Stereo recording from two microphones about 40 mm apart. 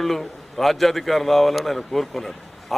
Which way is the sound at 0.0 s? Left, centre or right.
Centre.